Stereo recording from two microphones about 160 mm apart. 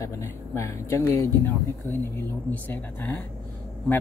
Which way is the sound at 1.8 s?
15° left (ahead or behind).